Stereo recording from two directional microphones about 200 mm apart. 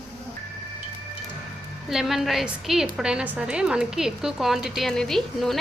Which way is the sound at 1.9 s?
Centre (ahead or behind).